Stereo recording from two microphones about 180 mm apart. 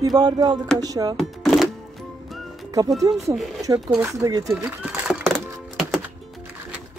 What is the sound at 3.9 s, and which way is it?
Speech, 15° right (ahead or behind).